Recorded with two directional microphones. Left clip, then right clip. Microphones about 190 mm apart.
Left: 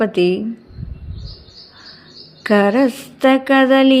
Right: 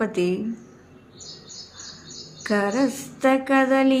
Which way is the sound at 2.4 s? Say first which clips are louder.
Left 9 dB; 35° left (ahead or behind).